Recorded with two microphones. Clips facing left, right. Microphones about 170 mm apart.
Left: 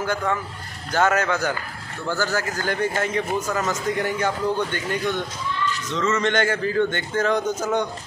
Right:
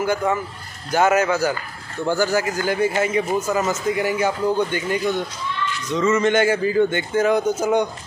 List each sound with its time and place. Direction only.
0.0 s a man's voice: 10° right (ahead or behind)